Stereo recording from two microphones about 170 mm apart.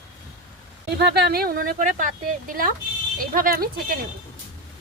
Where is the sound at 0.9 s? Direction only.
75° right (ahead or behind); by 3.9 s 60° right (ahead or behind).